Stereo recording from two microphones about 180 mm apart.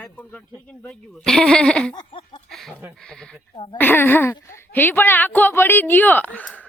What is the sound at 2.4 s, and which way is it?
Chicken, centre (ahead or behind).